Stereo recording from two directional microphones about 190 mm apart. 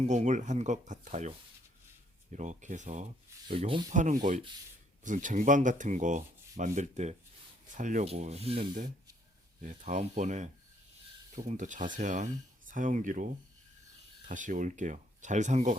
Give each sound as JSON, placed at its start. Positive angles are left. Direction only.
{"t": 0.0, "sound": "speech", "side_deg": -40}
{"t": 3.9, "sound": "speech", "side_deg": -40}
{"t": 9.6, "sound": "speech", "side_deg": -40}